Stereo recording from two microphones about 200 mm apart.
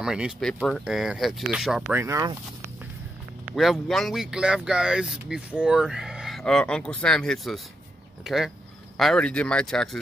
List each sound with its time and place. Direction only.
0.0 s speech: 5° right (ahead or behind)
3.5 s speech: centre (ahead or behind)